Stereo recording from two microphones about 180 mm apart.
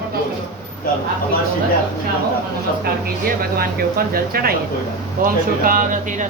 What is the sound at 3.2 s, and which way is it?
Speech, 55° right (ahead or behind).